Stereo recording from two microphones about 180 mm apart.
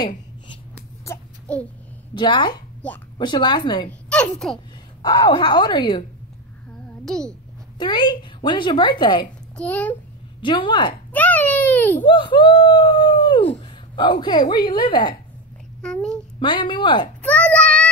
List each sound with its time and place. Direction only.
0.7 s a sound: 10° left (ahead or behind)
2.1 s a woman's voice: 25° left (ahead or behind)
4.1 s a child's voice: 5° left (ahead or behind)
5.0 s a woman's voice: 25° left (ahead or behind)
7.1 s a child's voice: 5° left (ahead or behind)
7.8 s a woman's voice: 25° left (ahead or behind)
9.6 s a child's voice: 10° left (ahead or behind)
10.4 s a woman's voice: 25° left (ahead or behind)
11.1 s a sound: 10° left (ahead or behind)
12.1 s speech: 30° left (ahead or behind)
15.8 s a child's voice: 5° left (ahead or behind)
16.3 s a woman's voice: 25° left (ahead or behind)
17.2 s a sound: 5° left (ahead or behind)